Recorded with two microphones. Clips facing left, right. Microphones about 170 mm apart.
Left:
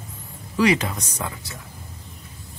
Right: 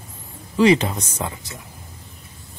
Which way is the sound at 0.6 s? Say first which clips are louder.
Right 4 dB; 25° right (ahead or behind).